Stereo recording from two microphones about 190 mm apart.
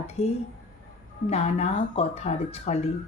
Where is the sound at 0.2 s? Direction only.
35° left (ahead or behind).